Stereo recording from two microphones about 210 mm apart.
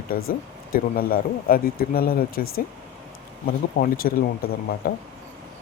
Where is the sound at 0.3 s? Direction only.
45° left (ahead or behind).